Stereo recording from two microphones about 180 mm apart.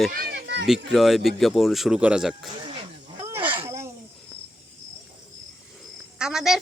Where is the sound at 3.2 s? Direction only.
15° right (ahead or behind).